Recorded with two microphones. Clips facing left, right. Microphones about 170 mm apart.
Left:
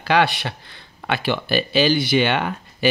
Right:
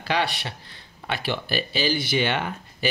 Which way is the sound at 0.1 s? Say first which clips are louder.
Left 7 dB; 70° left (ahead or behind).